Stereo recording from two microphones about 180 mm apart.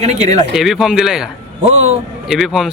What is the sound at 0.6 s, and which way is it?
Speech, 5° right (ahead or behind).